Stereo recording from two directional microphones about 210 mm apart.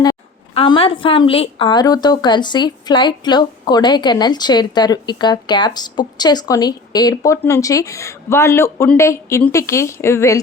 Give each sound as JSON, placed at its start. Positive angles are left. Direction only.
{"t": 0.0, "sound": "a woman's voice", "side_deg": 20}